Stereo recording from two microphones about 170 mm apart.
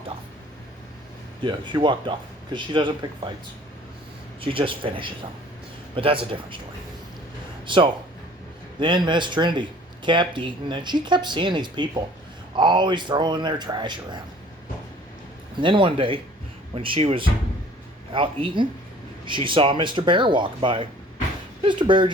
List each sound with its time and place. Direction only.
1.5 s speech: 30° right (ahead or behind)
4.4 s speech: 30° right (ahead or behind)
7.7 s speech: 30° right (ahead or behind)
15.6 s speech: 30° right (ahead or behind)